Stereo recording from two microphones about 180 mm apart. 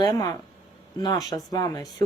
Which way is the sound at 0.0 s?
20° left (ahead or behind).